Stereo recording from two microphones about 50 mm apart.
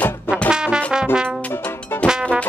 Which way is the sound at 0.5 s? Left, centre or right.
Centre.